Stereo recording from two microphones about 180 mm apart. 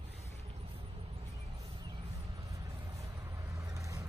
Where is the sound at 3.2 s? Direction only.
15° right (ahead or behind).